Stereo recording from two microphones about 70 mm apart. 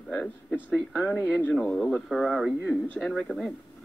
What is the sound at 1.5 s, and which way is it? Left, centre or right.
Speech, centre.